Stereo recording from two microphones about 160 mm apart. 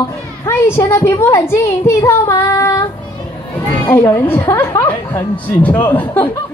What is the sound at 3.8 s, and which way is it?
Speech, 15° left (ahead or behind).